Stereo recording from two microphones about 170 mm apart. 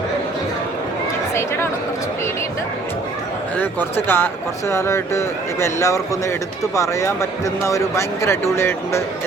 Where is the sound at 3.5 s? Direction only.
10° left (ahead or behind).